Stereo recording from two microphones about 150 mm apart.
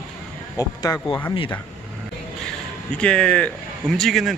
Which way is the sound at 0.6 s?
25° left (ahead or behind).